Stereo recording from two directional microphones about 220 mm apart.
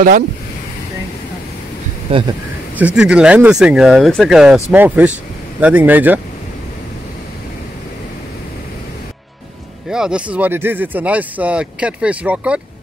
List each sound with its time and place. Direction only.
2.0 s speech: 25° right (ahead or behind)
2.8 s speech: 5° right (ahead or behind)
9.8 s speech: 5° right (ahead or behind)